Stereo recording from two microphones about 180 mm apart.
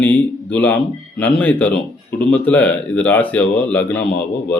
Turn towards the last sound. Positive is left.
turn(degrees=5)  # may be behind; listen again after turning